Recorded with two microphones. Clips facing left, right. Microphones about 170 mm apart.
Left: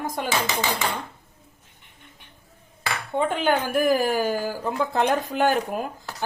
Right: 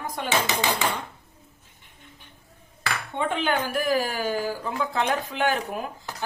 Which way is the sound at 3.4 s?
45° left (ahead or behind).